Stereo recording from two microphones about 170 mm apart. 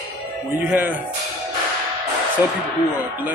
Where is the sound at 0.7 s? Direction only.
10° right (ahead or behind).